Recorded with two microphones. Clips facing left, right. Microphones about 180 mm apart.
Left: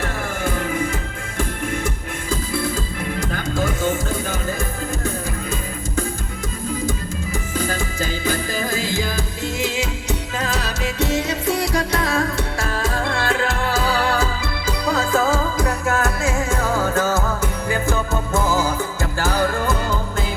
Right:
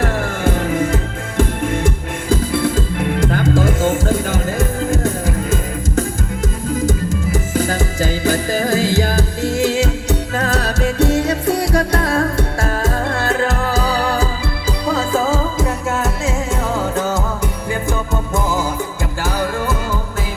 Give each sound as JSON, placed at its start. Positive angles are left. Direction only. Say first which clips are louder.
{"t": 1.4, "sound": "music", "louder": "right 7 dB", "side_deg": -90}
{"t": 6.7, "sound": "music", "louder": "right 6 dB", "side_deg": -90}
{"t": 7.7, "sound": "music", "louder": "right 5 dB", "side_deg": -40}
{"t": 8.2, "sound": "music", "louder": "right 6 dB", "side_deg": -75}
{"t": 19.2, "sound": "music", "louder": "even", "side_deg": -10}